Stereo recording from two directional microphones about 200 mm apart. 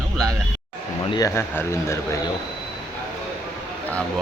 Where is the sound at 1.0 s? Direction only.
25° left (ahead or behind).